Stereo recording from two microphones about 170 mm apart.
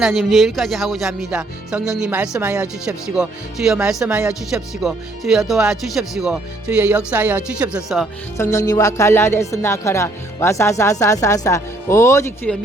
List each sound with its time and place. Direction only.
0.0 s speech: centre (ahead or behind)
8.4 s speech: 20° left (ahead or behind)
12.5 s speech: 5° left (ahead or behind)